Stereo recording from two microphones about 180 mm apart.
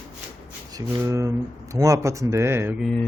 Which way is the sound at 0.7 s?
20° right (ahead or behind).